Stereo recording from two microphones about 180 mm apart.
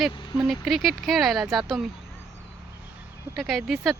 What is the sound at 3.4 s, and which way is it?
Speech, centre (ahead or behind).